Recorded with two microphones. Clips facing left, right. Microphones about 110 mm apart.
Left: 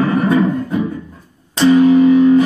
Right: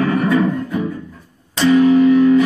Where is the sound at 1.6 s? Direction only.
20° left (ahead or behind).